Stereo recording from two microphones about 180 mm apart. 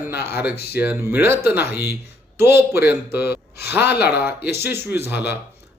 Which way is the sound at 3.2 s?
65° left (ahead or behind).